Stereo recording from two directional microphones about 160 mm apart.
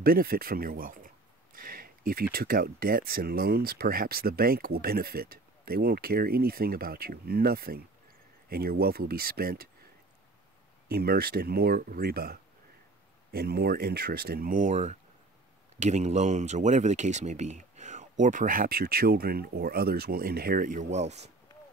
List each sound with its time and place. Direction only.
0.0 s a sound: 65° right (ahead or behind)
2.3 s speech: 70° right (ahead or behind)
10.9 s speech: 75° right (ahead or behind)
13.3 s speech: 85° right; by 21.2 s 45° right (ahead or behind)